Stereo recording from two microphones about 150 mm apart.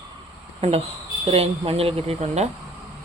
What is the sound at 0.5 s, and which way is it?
Speech, 40° right (ahead or behind).